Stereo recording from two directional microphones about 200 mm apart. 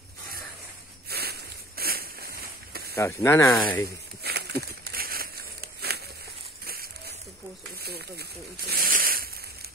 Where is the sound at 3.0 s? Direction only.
15° left (ahead or behind).